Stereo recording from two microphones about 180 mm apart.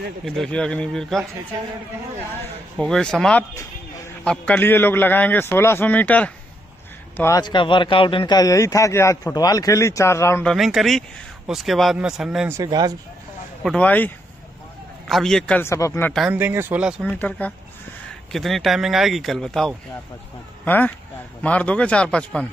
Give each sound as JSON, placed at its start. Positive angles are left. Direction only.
{"t": 0.2, "sound": "speech", "side_deg": 5}
{"t": 2.8, "sound": "a man's voice", "side_deg": 5}
{"t": 7.2, "sound": "a man's voice", "side_deg": 20}
{"t": 10.5, "sound": "speech", "side_deg": 0}
{"t": 12.4, "sound": "speech", "side_deg": -20}
{"t": 13.7, "sound": "a man's voice", "side_deg": 10}
{"t": 16.1, "sound": "speech", "side_deg": 0}
{"t": 16.3, "sound": "speech", "side_deg": -10}
{"t": 17.0, "sound": "a man's voice", "side_deg": 10}